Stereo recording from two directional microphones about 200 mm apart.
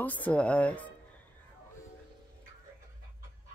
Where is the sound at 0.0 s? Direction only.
10° left (ahead or behind).